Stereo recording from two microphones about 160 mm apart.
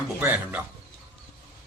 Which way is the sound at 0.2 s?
10° right (ahead or behind).